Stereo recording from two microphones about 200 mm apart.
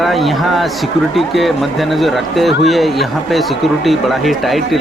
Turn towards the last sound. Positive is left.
turn(degrees=0)  # may be behind; listen again after turning